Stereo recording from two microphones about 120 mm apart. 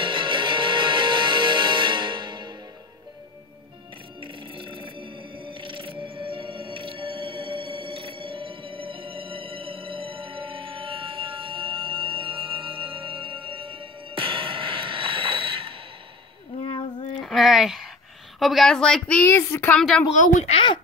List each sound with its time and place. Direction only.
0.0 s music: 45° right (ahead or behind)
4.2 s music: 45° right (ahead or behind)
17.2 s a sound: centre (ahead or behind)
18.4 s a woman's voice: centre (ahead or behind); by 19.8 s 20° left (ahead or behind)
19.8 s speech: 5° left (ahead or behind)
20.1 s speech: 75° left (ahead or behind)
20.5 s speech: 45° left (ahead or behind)